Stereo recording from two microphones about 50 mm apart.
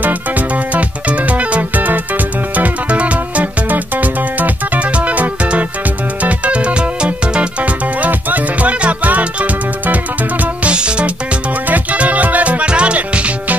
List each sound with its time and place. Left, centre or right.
0.7 s music: right
11.7 s music: right